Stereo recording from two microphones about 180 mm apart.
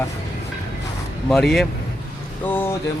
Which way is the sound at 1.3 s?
Centre (ahead or behind).